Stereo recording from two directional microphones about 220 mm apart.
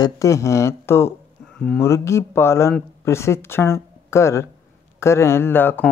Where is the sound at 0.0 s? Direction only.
15° left (ahead or behind).